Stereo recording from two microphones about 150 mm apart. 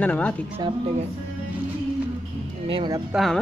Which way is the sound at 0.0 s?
10° left (ahead or behind).